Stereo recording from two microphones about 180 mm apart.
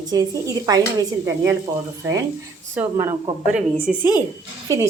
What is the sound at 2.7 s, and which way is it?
Speech, 15° right (ahead or behind).